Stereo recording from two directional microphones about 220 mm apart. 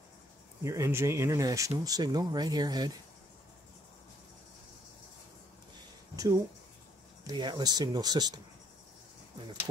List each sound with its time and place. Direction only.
0.7 s speech: 15° right (ahead or behind)
6.1 s speech: 15° right (ahead or behind)